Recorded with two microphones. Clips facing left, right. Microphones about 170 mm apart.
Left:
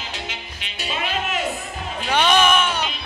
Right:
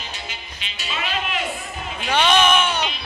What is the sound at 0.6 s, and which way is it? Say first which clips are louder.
Music: left 2 dB; 50° left (ahead or behind).